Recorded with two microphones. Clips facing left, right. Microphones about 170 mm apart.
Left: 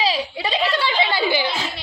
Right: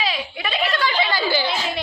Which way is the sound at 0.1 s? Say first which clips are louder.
Left 4 dB; 35° left (ahead or behind).